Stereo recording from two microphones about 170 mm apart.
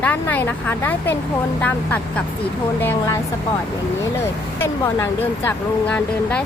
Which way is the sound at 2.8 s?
15° left (ahead or behind).